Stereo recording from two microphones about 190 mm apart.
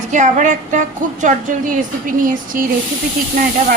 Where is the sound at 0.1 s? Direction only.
40° right (ahead or behind).